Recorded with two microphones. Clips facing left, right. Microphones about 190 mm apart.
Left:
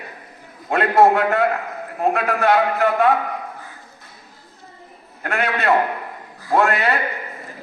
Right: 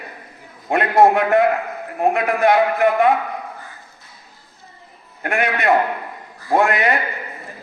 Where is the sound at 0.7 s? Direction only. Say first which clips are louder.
Right 1 dB; 15° right (ahead or behind).